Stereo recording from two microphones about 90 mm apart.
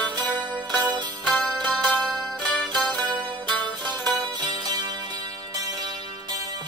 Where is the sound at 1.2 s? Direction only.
Centre (ahead or behind).